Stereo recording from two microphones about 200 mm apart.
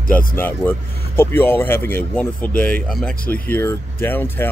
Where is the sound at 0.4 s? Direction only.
10° left (ahead or behind).